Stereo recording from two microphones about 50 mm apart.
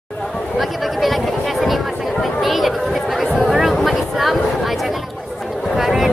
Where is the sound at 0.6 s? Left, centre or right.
Centre.